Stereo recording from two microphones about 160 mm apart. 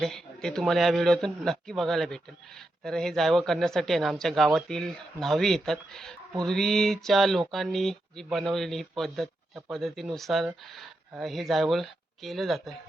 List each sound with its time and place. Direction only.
0.0 s speech: 5° left (ahead or behind)